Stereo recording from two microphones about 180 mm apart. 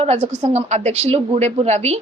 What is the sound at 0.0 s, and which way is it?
A woman's voice, 35° right (ahead or behind).